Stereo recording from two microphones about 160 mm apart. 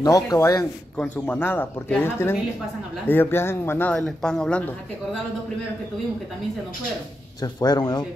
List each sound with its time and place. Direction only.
0.0 s speech: 20° left (ahead or behind)
0.9 s speech: 10° left (ahead or behind)
7.6 s speech: 25° left (ahead or behind)